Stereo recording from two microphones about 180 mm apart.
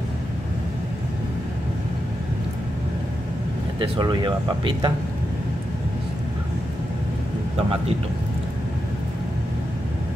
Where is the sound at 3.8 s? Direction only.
25° right (ahead or behind).